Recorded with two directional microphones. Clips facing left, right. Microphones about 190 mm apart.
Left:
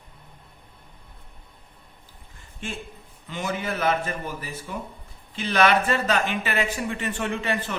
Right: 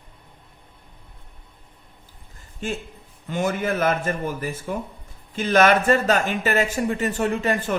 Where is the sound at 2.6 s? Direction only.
40° right (ahead or behind).